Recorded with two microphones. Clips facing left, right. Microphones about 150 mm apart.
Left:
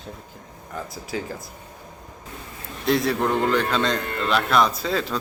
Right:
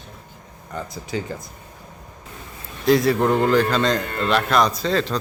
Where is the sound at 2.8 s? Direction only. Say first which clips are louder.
Right 4 dB; centre (ahead or behind).